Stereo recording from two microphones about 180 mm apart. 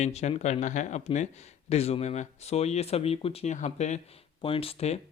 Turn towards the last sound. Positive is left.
turn(degrees=35)  # may be behind; listen again after turning